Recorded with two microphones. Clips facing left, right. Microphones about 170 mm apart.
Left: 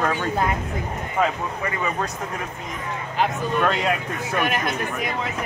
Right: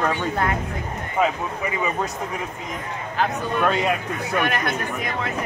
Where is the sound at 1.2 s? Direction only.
10° right (ahead or behind).